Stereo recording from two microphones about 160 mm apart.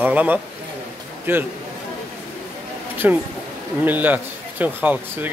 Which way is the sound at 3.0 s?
15° right (ahead or behind).